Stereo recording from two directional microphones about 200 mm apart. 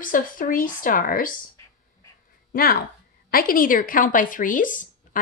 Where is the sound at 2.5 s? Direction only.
45° left (ahead or behind).